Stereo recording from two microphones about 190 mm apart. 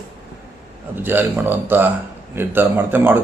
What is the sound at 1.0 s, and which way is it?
A man's voice, 10° right (ahead or behind).